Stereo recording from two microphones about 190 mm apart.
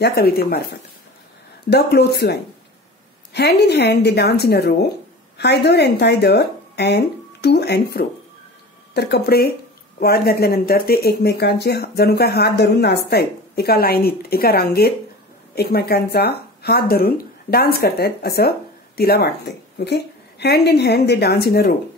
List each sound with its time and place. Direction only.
0.0 s speech: 55° left (ahead or behind)
3.3 s speech: 60° left (ahead or behind)